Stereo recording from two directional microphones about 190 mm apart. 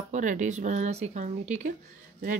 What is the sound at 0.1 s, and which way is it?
Speech, 40° right (ahead or behind).